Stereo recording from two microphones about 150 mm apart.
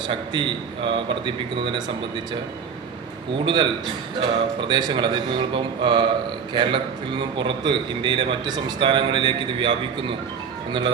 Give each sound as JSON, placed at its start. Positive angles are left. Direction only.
{"t": 0.1, "sound": "a man's voice", "side_deg": -35}
{"t": 3.4, "sound": "a man's voice", "side_deg": -30}
{"t": 4.7, "sound": "a man's voice", "side_deg": -30}